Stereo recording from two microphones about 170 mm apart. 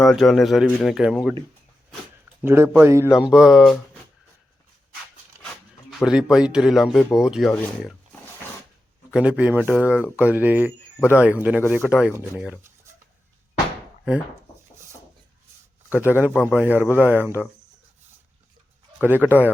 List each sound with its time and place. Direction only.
0.0 s speech: centre (ahead or behind)
2.4 s speech: 15° right (ahead or behind)
3.1 s speech: 5° right (ahead or behind)
5.9 s speech: 5° right (ahead or behind)
9.1 s speech: 5° right (ahead or behind)
16.0 s speech: 10° right (ahead or behind)
16.3 s a man's voice: 10° left (ahead or behind)
16.6 s speech: 10° right (ahead or behind)
19.0 s speech: 10° right (ahead or behind)